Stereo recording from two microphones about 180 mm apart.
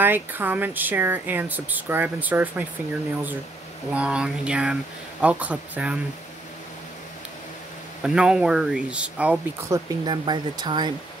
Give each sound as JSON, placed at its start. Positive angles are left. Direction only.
{"t": 0.0, "sound": "speech", "side_deg": -10}
{"t": 3.9, "sound": "speech", "side_deg": -5}
{"t": 8.0, "sound": "speech", "side_deg": -5}
{"t": 10.0, "sound": "speech", "side_deg": -25}